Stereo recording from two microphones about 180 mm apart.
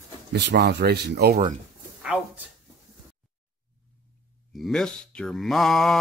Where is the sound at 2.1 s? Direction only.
5° right (ahead or behind).